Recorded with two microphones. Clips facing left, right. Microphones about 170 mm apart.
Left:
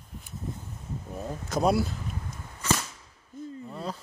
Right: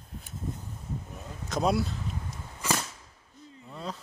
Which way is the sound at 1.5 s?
Centre (ahead or behind).